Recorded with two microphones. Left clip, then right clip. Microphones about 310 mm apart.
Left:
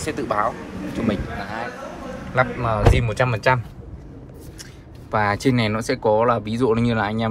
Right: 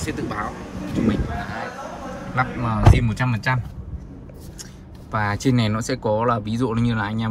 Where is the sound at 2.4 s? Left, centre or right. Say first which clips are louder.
Left 3 dB; left.